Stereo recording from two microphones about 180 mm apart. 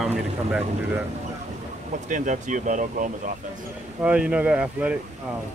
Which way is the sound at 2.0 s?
45° right (ahead or behind).